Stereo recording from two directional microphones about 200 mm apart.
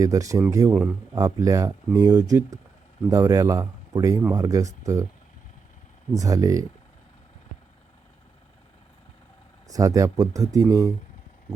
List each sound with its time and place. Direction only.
0.0 s speech: 15° right (ahead or behind)
6.1 s speech: 15° right (ahead or behind)
9.6 s speech: 15° right (ahead or behind)